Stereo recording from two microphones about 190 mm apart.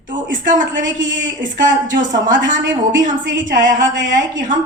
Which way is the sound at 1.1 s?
45° right (ahead or behind).